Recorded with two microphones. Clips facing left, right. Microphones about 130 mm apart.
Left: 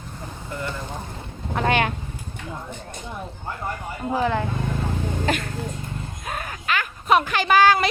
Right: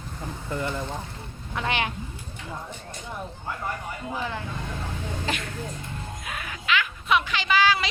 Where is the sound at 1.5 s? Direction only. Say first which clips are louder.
Left 6 dB; 50° left (ahead or behind).